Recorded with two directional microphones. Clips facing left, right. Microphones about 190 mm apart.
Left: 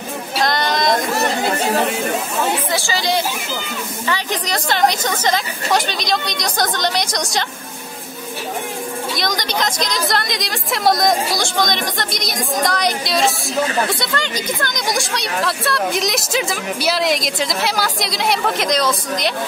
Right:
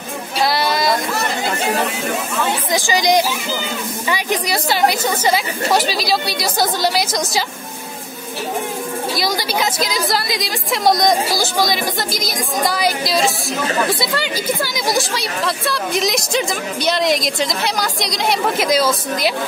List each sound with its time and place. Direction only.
0.4 s a sound: 5° right (ahead or behind)
2.7 s speech: 15° right (ahead or behind)
9.1 s speech: 5° right (ahead or behind)